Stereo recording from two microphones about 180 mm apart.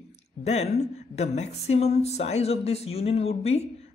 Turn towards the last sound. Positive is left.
turn(degrees=35)  # may be behind; listen again after turning